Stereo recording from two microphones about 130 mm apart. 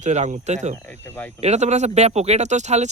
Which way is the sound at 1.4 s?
60° right (ahead or behind).